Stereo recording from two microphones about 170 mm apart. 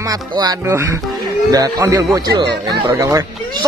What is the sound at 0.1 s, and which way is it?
Speech, 20° right (ahead or behind).